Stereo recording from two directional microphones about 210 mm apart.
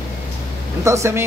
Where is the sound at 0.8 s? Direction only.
15° right (ahead or behind).